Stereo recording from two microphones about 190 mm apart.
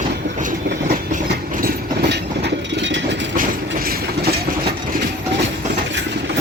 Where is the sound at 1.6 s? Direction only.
55° right (ahead or behind); by 3.0 s 75° right (ahead or behind).